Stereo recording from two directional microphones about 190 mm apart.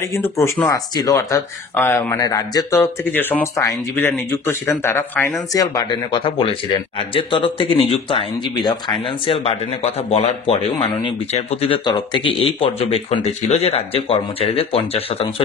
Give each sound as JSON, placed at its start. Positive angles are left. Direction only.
{"t": 0.7, "sound": "speech", "side_deg": 20}